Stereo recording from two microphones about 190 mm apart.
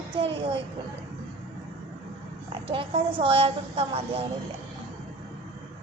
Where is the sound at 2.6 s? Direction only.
30° right (ahead or behind).